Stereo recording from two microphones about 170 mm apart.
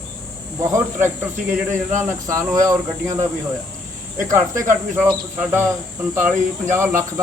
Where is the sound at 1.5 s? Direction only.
45° right (ahead or behind).